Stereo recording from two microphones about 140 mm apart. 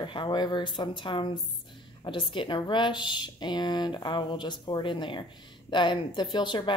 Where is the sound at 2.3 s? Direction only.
35° left (ahead or behind).